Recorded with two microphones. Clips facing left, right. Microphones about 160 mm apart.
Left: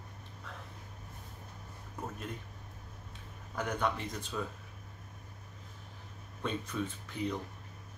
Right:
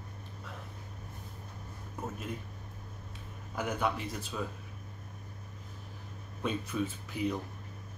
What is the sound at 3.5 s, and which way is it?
Speech, 5° right (ahead or behind).